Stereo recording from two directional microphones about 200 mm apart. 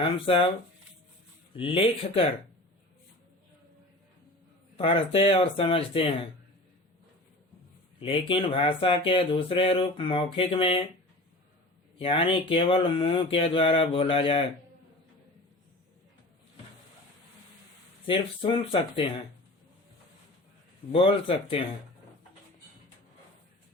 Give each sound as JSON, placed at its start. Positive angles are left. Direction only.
{"t": 0.0, "sound": "speech", "side_deg": 25}
{"t": 1.5, "sound": "speech", "side_deg": 25}
{"t": 4.8, "sound": "speech", "side_deg": 30}
{"t": 7.9, "sound": "speech", "side_deg": 25}
{"t": 11.9, "sound": "speech", "side_deg": 25}
{"t": 18.0, "sound": "speech", "side_deg": 25}
{"t": 20.9, "sound": "speech", "side_deg": 25}